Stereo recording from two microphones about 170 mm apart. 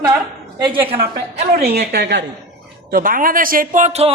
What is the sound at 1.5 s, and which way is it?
Speech, 65° right (ahead or behind).